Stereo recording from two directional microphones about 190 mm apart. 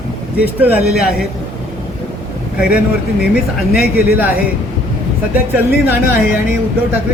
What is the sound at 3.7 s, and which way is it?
Speech, 55° left (ahead or behind).